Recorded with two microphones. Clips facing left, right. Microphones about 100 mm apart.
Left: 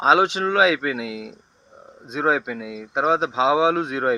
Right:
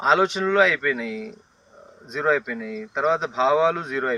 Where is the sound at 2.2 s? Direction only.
65° left (ahead or behind).